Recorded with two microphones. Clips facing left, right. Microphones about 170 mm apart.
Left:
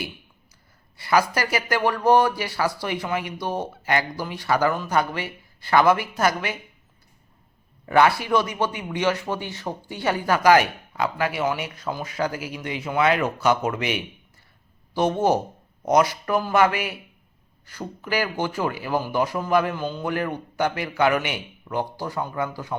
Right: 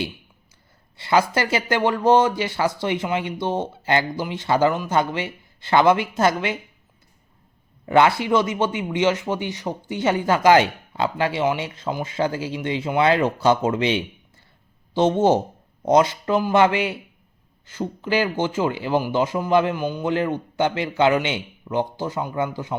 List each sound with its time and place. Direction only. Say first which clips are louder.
0.9 s speech: right 2 dB; 25° right (ahead or behind)
7.9 s speech: right 2 dB; 25° right (ahead or behind)